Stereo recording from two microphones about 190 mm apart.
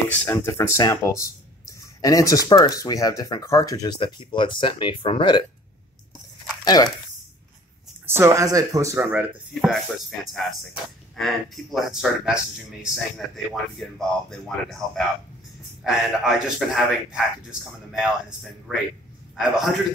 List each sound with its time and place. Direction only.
0.1 s speech: 15° left (ahead or behind)
6.6 s speech: 20° left (ahead or behind)
8.1 s speech: 15° right (ahead or behind)
9.6 s a man's voice: centre (ahead or behind)